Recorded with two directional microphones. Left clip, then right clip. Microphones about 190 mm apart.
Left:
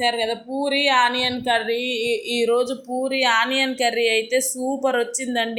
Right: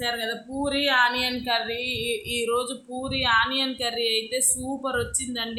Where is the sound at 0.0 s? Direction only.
15° left (ahead or behind).